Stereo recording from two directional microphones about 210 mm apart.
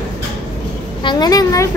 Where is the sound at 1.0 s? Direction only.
20° left (ahead or behind).